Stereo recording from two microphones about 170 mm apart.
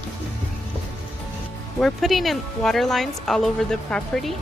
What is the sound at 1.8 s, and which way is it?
Speech, centre (ahead or behind).